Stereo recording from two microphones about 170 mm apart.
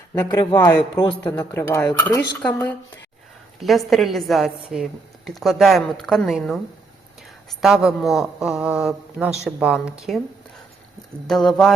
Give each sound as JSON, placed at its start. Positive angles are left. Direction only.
{"t": 0.1, "sound": "a woman's voice", "side_deg": 20}
{"t": 7.6, "sound": "a woman's voice", "side_deg": 0}
{"t": 11.3, "sound": "a woman's voice", "side_deg": 0}